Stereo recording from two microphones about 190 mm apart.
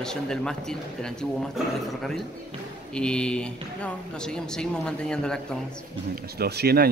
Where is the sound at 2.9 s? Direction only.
5° left (ahead or behind).